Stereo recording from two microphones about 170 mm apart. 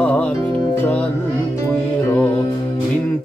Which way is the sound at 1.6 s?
15° left (ahead or behind).